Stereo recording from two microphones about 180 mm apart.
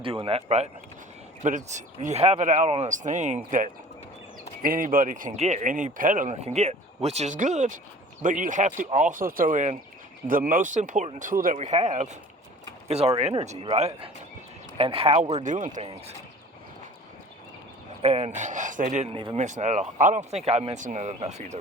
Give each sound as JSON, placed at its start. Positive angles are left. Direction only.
{"t": 0.0, "sound": "speech", "side_deg": -30}
{"t": 4.6, "sound": "speech", "side_deg": -50}
{"t": 18.0, "sound": "speech", "side_deg": -35}
{"t": 19.5, "sound": "speech", "side_deg": -40}